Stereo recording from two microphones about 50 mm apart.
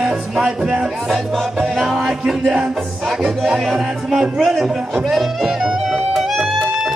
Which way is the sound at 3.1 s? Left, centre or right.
Centre.